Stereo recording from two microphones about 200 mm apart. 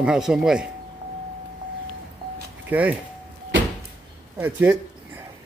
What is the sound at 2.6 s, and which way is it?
Speech, 5° right (ahead or behind).